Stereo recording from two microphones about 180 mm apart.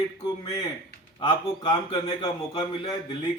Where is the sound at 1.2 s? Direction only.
30° left (ahead or behind).